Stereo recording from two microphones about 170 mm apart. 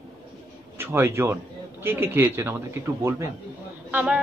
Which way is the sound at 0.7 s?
15° right (ahead or behind).